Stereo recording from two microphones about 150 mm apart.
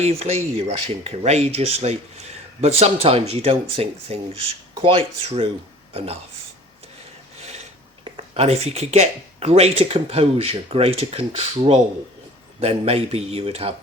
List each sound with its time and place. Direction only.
0.0 s speech: 45° right (ahead or behind)
7.4 s speech: 45° right (ahead or behind)